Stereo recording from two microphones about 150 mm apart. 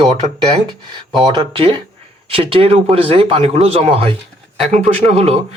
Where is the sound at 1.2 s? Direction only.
35° right (ahead or behind).